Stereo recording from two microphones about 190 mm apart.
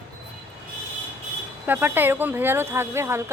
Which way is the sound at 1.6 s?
10° right (ahead or behind).